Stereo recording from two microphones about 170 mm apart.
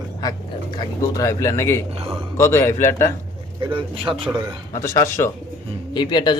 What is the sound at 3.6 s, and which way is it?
Speech, 30° right (ahead or behind).